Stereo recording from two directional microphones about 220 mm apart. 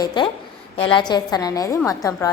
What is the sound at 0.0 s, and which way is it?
A woman's voice, 20° left (ahead or behind).